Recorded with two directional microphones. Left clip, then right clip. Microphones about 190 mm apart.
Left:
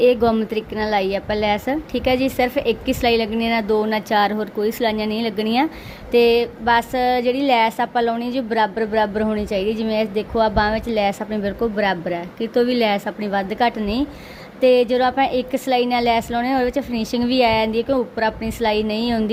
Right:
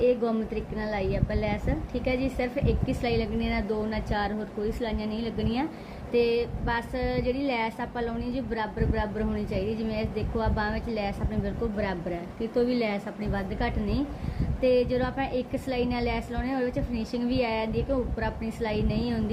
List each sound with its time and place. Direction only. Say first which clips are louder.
0.0 s a woman's voice: left 9 dB; 60° left (ahead or behind)